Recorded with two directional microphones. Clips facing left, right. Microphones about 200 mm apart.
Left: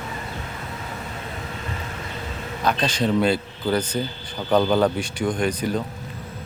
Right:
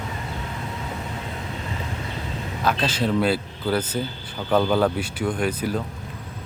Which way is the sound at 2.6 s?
5° right (ahead or behind).